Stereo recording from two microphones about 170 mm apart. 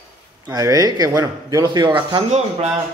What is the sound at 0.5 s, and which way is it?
Speech, 20° right (ahead or behind).